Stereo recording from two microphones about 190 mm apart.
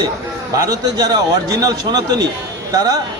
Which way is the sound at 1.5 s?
20° right (ahead or behind).